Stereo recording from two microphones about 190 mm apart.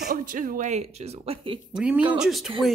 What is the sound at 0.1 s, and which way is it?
Speech, 45° right (ahead or behind).